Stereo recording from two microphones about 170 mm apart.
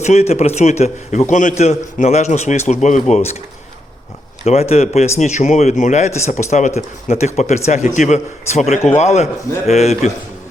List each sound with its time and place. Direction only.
0.0 s a man's voice: 40° left (ahead or behind)
4.4 s speech: 40° left (ahead or behind)